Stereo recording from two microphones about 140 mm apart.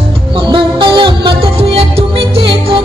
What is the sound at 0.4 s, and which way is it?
Music, 35° right (ahead or behind).